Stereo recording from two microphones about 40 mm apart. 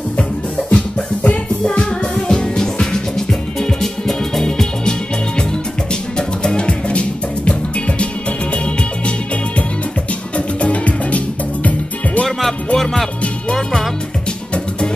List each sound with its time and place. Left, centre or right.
0.7 s music: left; by 4.9 s centre
6.1 s music: left
10.3 s music: left
12.3 s music: centre